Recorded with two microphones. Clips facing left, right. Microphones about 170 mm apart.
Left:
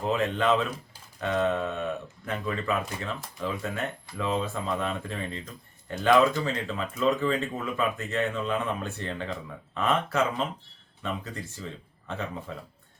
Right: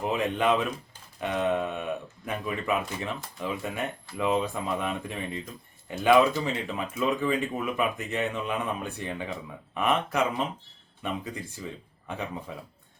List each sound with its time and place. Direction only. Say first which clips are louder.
0.0 s speech: even; 15° right (ahead or behind)